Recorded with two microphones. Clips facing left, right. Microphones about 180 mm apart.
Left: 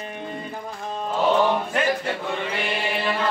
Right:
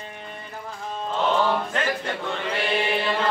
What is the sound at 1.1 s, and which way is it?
Music, 15° left (ahead or behind).